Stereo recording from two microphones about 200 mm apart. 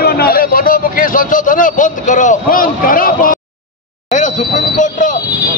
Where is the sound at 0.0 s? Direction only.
50° left (ahead or behind).